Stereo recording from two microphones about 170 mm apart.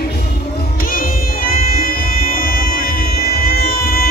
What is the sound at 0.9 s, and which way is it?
Music, 55° left (ahead or behind).